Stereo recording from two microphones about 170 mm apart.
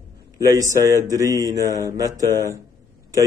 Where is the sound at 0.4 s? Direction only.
20° right (ahead or behind).